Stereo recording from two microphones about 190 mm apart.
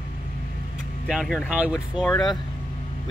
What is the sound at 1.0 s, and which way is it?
Speech, centre (ahead or behind).